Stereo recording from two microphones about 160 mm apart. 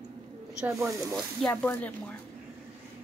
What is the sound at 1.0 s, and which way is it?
Speech, 20° right (ahead or behind).